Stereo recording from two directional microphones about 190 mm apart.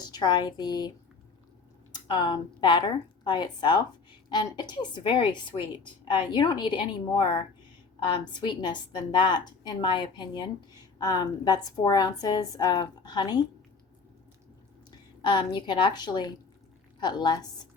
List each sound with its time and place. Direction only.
0.1 s a woman's voice: 25° left (ahead or behind)
14.8 s a woman's voice: 25° left (ahead or behind)